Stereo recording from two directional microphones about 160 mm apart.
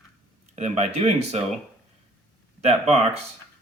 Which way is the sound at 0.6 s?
45° right (ahead or behind).